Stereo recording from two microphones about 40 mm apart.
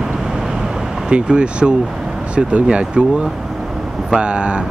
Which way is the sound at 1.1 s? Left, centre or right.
Right.